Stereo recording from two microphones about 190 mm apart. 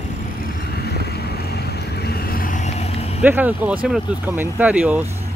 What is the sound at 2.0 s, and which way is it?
Vehicle, 50° left (ahead or behind).